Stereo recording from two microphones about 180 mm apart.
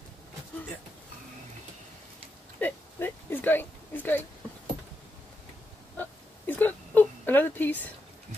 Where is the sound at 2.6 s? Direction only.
10° left (ahead or behind).